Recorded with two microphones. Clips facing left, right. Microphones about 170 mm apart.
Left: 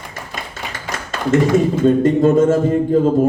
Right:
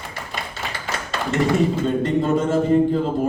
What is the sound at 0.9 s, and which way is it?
Tap, 45° left (ahead or behind).